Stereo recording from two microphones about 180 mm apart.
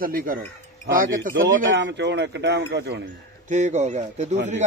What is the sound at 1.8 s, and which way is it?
Speech, 80° right.